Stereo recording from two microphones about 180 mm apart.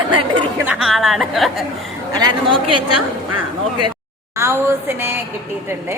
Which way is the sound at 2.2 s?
25° right (ahead or behind).